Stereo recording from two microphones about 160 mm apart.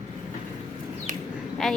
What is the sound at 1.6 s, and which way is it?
Speech, centre (ahead or behind).